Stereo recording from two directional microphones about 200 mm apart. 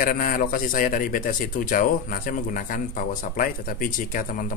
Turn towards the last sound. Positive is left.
turn(degrees=45)  # may be behind; listen again after turning